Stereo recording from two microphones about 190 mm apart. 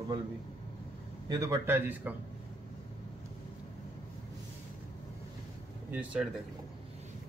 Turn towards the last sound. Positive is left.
turn(degrees=-5)  # may be behind; listen again after turning